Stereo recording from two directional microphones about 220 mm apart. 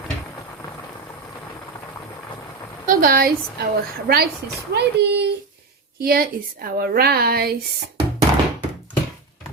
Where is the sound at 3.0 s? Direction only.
40° right (ahead or behind).